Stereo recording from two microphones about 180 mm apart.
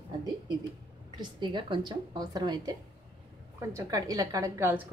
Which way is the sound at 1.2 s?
25° right (ahead or behind).